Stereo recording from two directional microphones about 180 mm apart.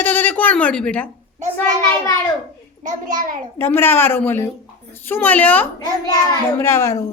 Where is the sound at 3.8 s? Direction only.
10° left (ahead or behind).